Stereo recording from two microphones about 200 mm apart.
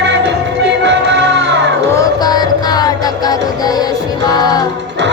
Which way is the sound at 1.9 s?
20° left (ahead or behind).